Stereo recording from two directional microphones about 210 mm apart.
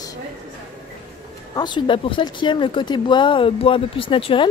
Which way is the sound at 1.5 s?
20° left (ahead or behind).